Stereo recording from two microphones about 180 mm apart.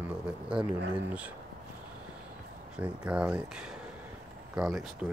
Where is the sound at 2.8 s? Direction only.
5° right (ahead or behind).